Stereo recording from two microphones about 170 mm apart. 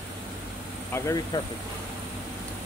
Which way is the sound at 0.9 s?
15° left (ahead or behind).